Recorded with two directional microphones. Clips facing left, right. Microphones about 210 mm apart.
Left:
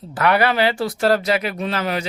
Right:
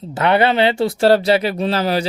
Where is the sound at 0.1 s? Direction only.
25° right (ahead or behind).